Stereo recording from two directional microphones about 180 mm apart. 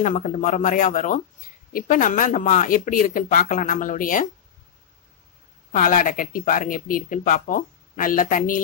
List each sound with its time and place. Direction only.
0.0 s speech: 45° left (ahead or behind)
5.7 s speech: 50° left (ahead or behind)